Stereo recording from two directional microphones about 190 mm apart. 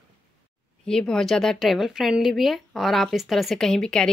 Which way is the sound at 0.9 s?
5° left (ahead or behind).